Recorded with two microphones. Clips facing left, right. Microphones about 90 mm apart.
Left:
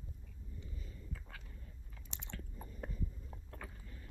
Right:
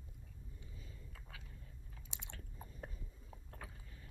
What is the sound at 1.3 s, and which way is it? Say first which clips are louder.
Biting: left 2 dB; 50° left (ahead or behind).